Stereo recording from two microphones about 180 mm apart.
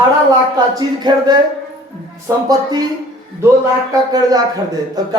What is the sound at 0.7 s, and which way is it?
Speech, 25° right (ahead or behind).